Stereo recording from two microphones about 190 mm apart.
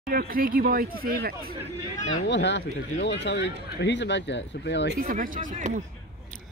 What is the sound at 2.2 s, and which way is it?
Speech, 65° left (ahead or behind).